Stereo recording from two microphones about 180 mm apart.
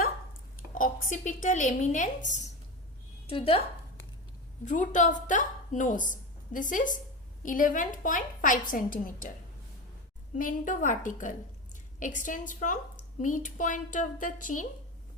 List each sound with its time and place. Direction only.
0.7 s a woman's voice: 50° left (ahead or behind)
3.2 s a woman's voice: 30° left (ahead or behind)
4.6 s a woman's voice: 45° left (ahead or behind)
10.3 s a woman's voice: 50° left (ahead or behind)